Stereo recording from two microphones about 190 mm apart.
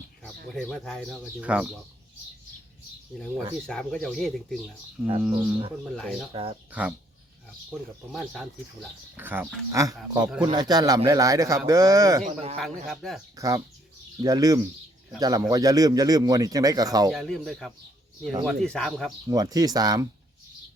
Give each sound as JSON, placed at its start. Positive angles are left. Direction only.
{"t": 0.5, "sound": "speech", "side_deg": 5}
{"t": 3.1, "sound": "speech", "side_deg": 0}
{"t": 6.3, "sound": "speech", "side_deg": -30}
{"t": 6.7, "sound": "speech", "side_deg": -5}
{"t": 9.1, "sound": "speech", "side_deg": -10}
{"t": 12.2, "sound": "speech", "side_deg": -35}
{"t": 12.5, "sound": "speech", "side_deg": 0}
{"t": 13.3, "sound": "speech", "side_deg": -15}
{"t": 17.1, "sound": "speech", "side_deg": 0}
{"t": 19.3, "sound": "speech", "side_deg": -20}